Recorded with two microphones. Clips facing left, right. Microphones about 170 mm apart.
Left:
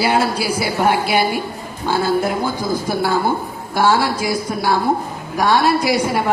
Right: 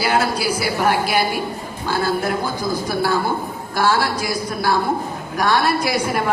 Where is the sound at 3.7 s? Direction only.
25° left (ahead or behind).